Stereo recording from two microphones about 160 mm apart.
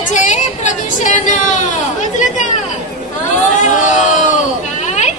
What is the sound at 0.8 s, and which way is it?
Chatter, 55° left (ahead or behind).